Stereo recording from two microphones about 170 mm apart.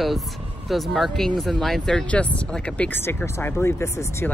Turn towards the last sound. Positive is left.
turn(degrees=15)  # may be behind; listen again after turning